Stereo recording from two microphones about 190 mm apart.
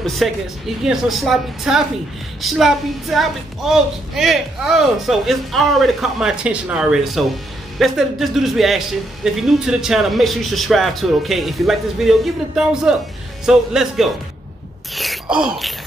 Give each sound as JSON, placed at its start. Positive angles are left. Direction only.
{"t": 0.0, "sound": "speech", "side_deg": 0}
{"t": 15.0, "sound": "wail", "side_deg": 0}